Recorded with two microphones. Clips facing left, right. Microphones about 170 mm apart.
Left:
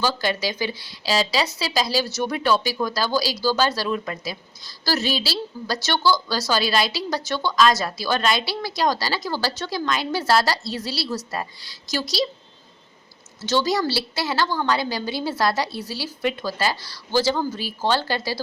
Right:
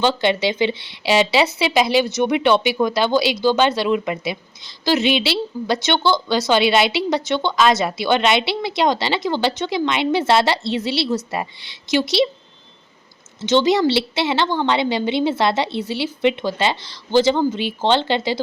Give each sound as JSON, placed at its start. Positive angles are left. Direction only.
{"t": 0.0, "sound": "a woman's voice", "side_deg": -25}
{"t": 13.4, "sound": "a woman's voice", "side_deg": -20}